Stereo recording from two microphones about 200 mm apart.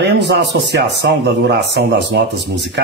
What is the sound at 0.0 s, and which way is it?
Speech, 55° right (ahead or behind).